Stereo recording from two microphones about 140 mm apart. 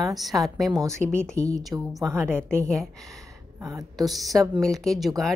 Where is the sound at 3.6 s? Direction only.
25° right (ahead or behind).